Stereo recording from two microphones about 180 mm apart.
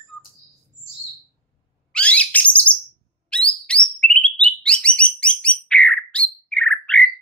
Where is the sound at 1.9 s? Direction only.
5° left (ahead or behind).